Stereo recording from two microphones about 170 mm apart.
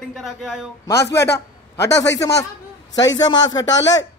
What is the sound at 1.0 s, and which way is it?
Speech, 80° left.